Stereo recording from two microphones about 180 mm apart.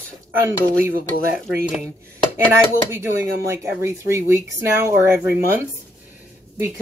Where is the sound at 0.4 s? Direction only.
15° right (ahead or behind).